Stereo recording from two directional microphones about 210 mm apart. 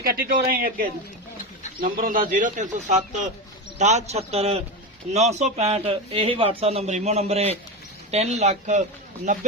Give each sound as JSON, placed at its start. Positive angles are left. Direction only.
{"t": 0.2, "sound": "a man's voice", "side_deg": -45}